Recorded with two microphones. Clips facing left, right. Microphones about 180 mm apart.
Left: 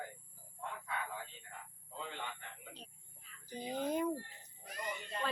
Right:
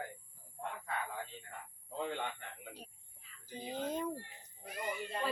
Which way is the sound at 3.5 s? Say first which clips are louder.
Left 2 dB; 15° left (ahead or behind).